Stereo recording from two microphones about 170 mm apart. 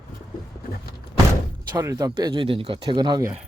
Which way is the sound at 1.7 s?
20° right (ahead or behind).